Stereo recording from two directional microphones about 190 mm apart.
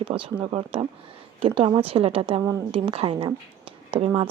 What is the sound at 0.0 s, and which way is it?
A woman's voice, 25° right (ahead or behind).